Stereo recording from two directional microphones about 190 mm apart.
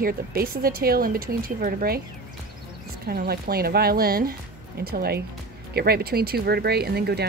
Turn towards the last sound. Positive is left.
turn(degrees=-60)  # may be behind; listen again after turning